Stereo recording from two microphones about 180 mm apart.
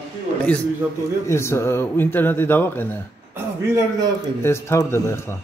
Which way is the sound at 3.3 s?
15° right (ahead or behind).